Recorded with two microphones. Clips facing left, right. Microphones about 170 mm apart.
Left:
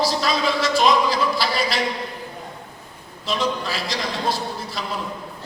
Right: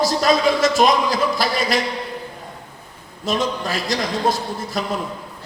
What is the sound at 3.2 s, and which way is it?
A man's voice, 45° right (ahead or behind).